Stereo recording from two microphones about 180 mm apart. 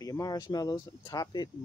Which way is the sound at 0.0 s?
20° left (ahead or behind).